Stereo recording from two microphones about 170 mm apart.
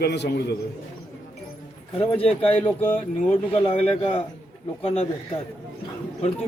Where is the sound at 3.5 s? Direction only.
35° left (ahead or behind).